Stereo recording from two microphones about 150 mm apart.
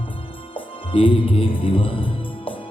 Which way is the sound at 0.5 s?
35° left (ahead or behind).